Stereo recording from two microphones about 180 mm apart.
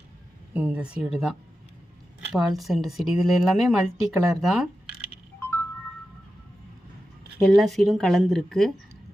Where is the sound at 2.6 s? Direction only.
Centre (ahead or behind).